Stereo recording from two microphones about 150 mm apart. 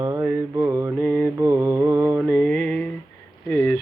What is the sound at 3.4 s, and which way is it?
Speech, 10° left (ahead or behind).